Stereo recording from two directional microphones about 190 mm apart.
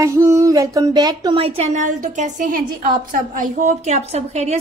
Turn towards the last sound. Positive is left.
turn(degrees=-35)  # may be behind; listen again after turning